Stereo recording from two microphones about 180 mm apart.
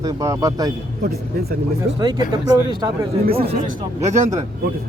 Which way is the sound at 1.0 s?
60° right (ahead or behind).